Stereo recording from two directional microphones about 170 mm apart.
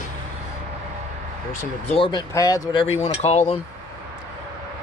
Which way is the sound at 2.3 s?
20° left (ahead or behind).